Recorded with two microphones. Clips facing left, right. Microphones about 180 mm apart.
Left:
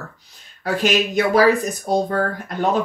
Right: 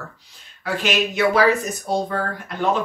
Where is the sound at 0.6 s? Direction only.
40° left (ahead or behind).